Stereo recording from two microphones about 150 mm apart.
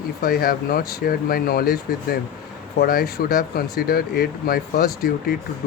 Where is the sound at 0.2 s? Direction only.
80° left.